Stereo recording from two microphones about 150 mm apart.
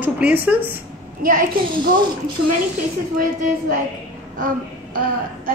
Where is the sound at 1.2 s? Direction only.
65° right (ahead or behind).